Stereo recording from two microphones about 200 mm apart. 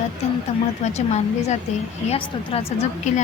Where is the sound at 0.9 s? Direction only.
35° left (ahead or behind).